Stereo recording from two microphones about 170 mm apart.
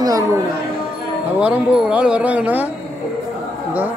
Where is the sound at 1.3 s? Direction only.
10° right (ahead or behind).